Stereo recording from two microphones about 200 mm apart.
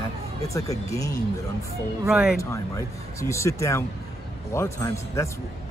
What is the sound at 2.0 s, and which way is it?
Speech, 5° right (ahead or behind).